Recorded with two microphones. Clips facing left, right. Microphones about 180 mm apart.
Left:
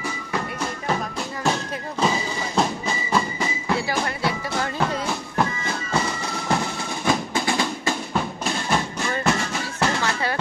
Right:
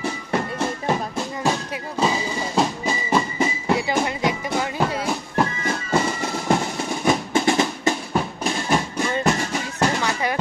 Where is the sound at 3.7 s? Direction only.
20° right (ahead or behind).